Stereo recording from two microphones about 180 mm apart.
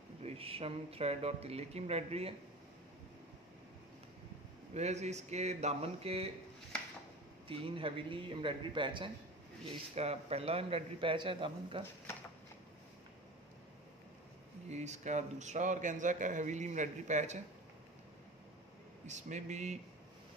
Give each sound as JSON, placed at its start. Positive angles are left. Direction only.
{"t": 0.2, "sound": "a man's voice", "side_deg": -35}
{"t": 4.7, "sound": "a man's voice", "side_deg": -40}
{"t": 7.4, "sound": "a man's voice", "side_deg": -30}
{"t": 14.7, "sound": "a man's voice", "side_deg": -40}
{"t": 19.0, "sound": "a man's voice", "side_deg": -40}